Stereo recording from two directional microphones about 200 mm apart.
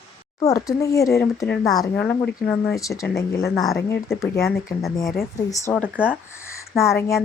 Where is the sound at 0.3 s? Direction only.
15° left (ahead or behind).